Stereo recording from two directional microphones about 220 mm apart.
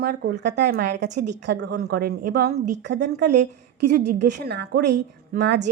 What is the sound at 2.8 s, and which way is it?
Speech, 50° right (ahead or behind).